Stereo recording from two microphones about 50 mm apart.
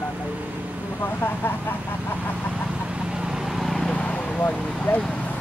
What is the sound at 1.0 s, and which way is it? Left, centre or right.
Speech, left.